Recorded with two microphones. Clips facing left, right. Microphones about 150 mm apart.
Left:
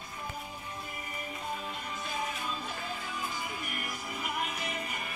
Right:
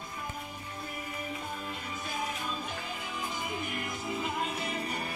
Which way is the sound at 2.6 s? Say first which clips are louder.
Even; 15° right (ahead or behind).